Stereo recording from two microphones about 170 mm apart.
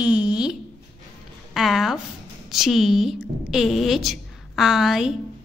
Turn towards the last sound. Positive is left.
turn(degrees=0)  # may be behind; listen again after turning